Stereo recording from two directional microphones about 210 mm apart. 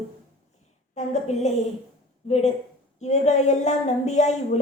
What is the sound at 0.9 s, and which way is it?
A woman's voice, 30° left (ahead or behind).